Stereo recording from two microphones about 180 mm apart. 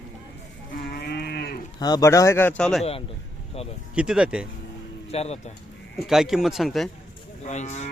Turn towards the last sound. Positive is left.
turn(degrees=40)  # may be behind; listen again after turning